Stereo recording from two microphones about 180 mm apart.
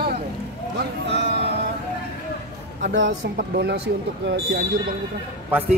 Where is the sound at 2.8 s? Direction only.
85° right.